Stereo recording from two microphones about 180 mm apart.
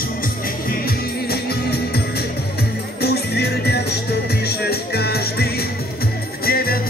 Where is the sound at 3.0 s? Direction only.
65° left (ahead or behind).